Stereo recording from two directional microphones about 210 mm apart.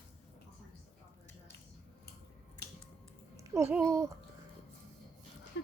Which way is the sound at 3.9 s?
15° right (ahead or behind).